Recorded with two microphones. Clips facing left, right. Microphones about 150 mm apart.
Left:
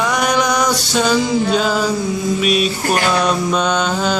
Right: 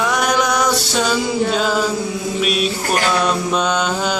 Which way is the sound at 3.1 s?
5° right (ahead or behind).